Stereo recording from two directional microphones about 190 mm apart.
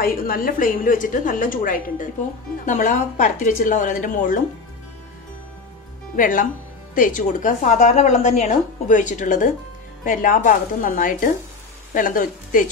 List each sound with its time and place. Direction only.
0.0 s a woman's voice: 50° left (ahead or behind)
6.1 s a woman's voice: 45° left (ahead or behind)